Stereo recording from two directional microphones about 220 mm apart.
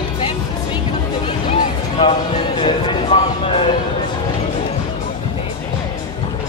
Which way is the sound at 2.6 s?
25° left (ahead or behind).